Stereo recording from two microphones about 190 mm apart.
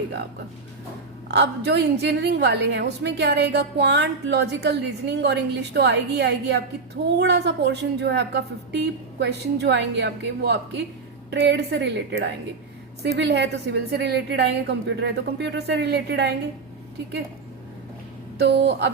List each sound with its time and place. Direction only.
1.3 s a woman's voice: 65° right (ahead or behind)
18.3 s a woman's voice: 65° right (ahead or behind)